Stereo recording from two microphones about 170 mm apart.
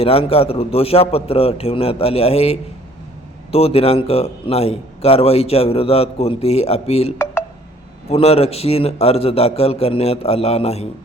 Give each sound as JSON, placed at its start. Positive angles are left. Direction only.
{"t": 0.0, "sound": "a man's voice", "side_deg": 35}
{"t": 8.1, "sound": "a man's voice", "side_deg": 35}